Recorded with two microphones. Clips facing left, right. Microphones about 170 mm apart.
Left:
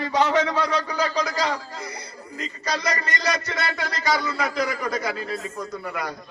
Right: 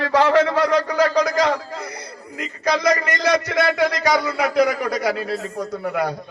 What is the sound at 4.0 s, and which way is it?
Speech, 65° right (ahead or behind).